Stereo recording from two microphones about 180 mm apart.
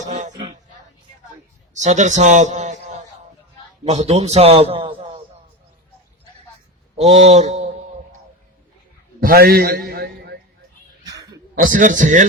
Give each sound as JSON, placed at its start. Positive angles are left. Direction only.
{"t": 0.0, "sound": "speech", "side_deg": -45}
{"t": 0.3, "sound": "a sound", "side_deg": -25}
{"t": 1.7, "sound": "a man's voice", "side_deg": -40}
{"t": 3.8, "sound": "a man's voice", "side_deg": -35}
{"t": 6.9, "sound": "a man's voice", "side_deg": -40}
{"t": 9.2, "sound": "a man's voice", "side_deg": -55}
{"t": 11.0, "sound": "a sound", "side_deg": -20}
{"t": 11.5, "sound": "a man's voice", "side_deg": -45}